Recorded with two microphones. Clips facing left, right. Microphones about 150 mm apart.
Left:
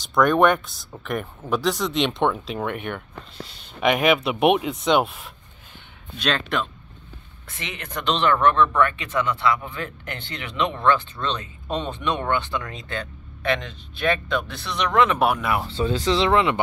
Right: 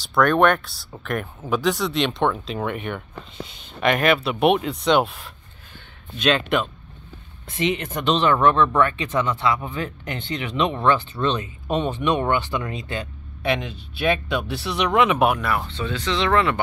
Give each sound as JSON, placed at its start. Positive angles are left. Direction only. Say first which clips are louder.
{"t": 0.2, "sound": "speech", "louder": "even", "side_deg": 5}
{"t": 2.3, "sound": "speech", "louder": "right 1 dB", "side_deg": 5}
{"t": 3.8, "sound": "speech", "louder": "even", "side_deg": 10}
{"t": 7.4, "sound": "speech", "louder": "right 12 dB", "side_deg": -15}
{"t": 15.7, "sound": "speech", "louder": "left 4 dB", "side_deg": 40}
{"t": 16.3, "sound": "speech", "louder": "right 2 dB", "side_deg": 20}